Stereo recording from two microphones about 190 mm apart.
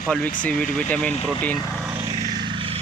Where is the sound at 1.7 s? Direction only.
10° right (ahead or behind).